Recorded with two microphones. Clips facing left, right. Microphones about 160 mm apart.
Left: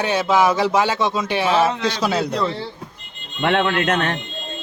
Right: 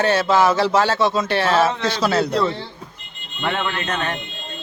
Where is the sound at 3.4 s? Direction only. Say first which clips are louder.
Left 5 dB; 75° left (ahead or behind).